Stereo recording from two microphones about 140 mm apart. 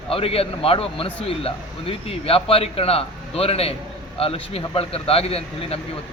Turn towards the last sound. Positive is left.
turn(degrees=45)  # may be behind; listen again after turning